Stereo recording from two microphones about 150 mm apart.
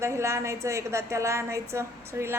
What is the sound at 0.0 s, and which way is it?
A woman's voice, 20° right (ahead or behind).